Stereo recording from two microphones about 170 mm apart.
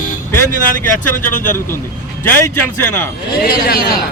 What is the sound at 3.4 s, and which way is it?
Speech, 60° left (ahead or behind).